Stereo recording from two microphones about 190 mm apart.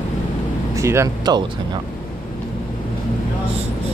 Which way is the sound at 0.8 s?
15° right (ahead or behind).